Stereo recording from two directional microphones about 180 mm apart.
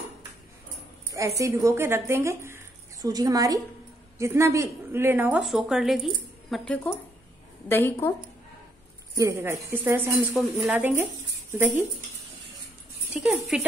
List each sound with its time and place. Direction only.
1.4 s a woman's voice: 15° right (ahead or behind); by 8.1 s 10° left (ahead or behind)
9.1 s a woman's voice: 15° right (ahead or behind)
13.1 s a woman's voice: 5° right (ahead or behind)